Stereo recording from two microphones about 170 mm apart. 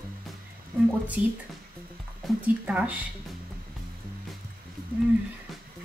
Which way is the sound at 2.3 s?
10° right (ahead or behind).